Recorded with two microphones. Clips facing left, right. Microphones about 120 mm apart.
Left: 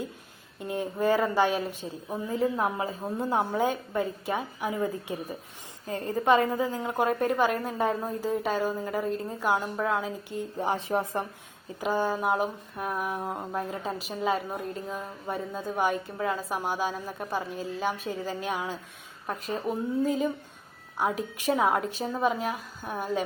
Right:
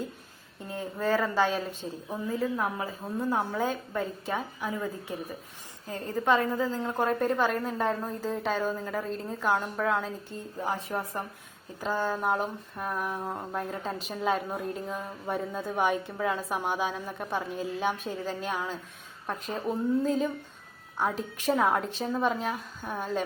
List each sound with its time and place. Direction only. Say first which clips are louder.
0.6 s a woman's voice: left 4 dB; 15° left (ahead or behind)
10.2 s a woman's voice: left 3 dB; 20° left (ahead or behind)